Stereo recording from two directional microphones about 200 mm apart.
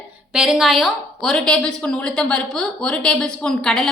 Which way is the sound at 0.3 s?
Centre (ahead or behind).